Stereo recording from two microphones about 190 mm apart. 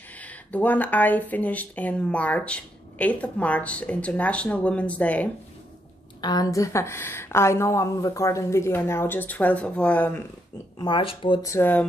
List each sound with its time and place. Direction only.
0.2 s speech: 10° left (ahead or behind)
6.2 s speech: 20° left (ahead or behind)
10.8 s speech: 25° left (ahead or behind)